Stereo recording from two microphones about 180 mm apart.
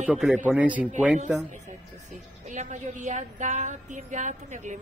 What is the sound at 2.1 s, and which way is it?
A woman's voice, 40° right (ahead or behind).